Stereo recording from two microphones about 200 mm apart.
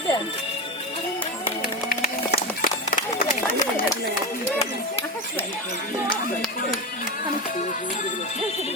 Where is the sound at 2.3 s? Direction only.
50° left (ahead or behind).